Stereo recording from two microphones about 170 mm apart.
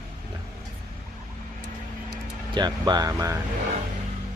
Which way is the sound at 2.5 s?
25° right (ahead or behind).